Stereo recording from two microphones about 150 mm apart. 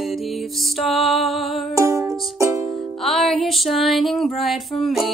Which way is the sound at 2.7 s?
Centre (ahead or behind).